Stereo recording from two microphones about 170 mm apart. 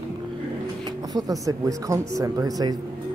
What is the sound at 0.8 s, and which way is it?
Speech, 20° right (ahead or behind).